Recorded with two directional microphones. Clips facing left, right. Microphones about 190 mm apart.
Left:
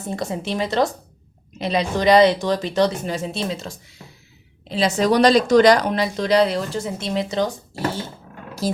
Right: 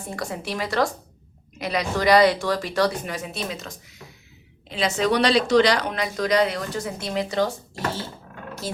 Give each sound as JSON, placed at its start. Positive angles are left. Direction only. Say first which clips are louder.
{"t": 0.1, "sound": "speech", "louder": "left 5 dB", "side_deg": 25}
{"t": 8.6, "sound": "speech", "louder": "left 8 dB", "side_deg": 40}